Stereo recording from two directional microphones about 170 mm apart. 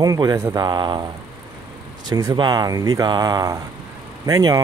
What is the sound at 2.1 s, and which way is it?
Speech, 20° right (ahead or behind).